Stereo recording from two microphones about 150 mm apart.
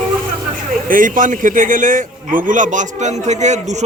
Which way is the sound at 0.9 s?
65° right (ahead or behind).